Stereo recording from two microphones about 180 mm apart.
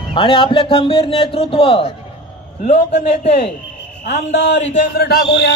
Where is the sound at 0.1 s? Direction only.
30° left (ahead or behind).